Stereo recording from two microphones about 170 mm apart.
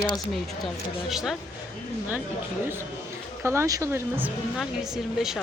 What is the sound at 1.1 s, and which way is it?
Speech, centre (ahead or behind).